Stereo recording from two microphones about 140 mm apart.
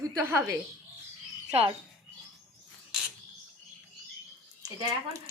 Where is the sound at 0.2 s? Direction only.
20° right (ahead or behind).